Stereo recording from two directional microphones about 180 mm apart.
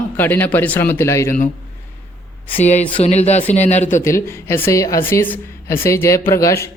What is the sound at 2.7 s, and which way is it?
Speech, 40° left (ahead or behind).